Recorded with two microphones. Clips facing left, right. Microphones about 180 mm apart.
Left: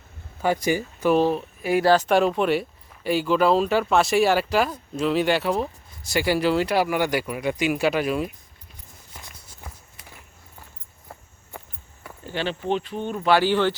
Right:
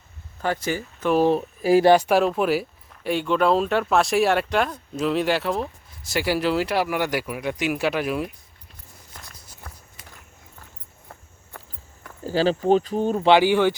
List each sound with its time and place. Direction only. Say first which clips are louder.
0.4 s speech: left 3 dB; 15° left (ahead or behind)
1.3 s speech: right 5 dB; 35° right (ahead or behind)
1.8 s speech: right 2 dB; 15° right (ahead or behind)
2.0 s speech: even; centre (ahead or behind)
12.2 s speech: right 7 dB; 35° right (ahead or behind)
13.3 s speech: right 1 dB; 10° right (ahead or behind)